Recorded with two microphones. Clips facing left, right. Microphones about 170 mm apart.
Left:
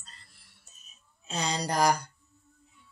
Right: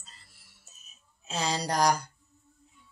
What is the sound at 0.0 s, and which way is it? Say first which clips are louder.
Music: left 1 dB; 5° right (ahead or behind).